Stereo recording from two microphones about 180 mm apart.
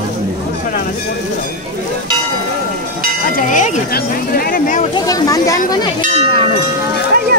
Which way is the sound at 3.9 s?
55° left (ahead or behind).